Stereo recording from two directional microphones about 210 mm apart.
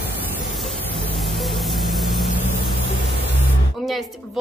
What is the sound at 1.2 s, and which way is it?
Vehicle, centre (ahead or behind).